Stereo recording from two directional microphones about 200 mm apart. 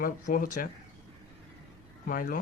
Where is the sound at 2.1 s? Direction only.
45° left (ahead or behind).